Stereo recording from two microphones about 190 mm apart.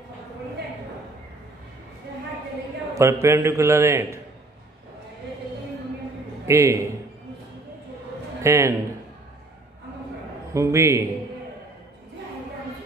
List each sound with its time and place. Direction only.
2.9 s a man's voice: 15° right (ahead or behind)
6.4 s a man's voice: 15° right (ahead or behind)
8.4 s a man's voice: 15° right (ahead or behind)
10.5 s a man's voice: 15° right (ahead or behind)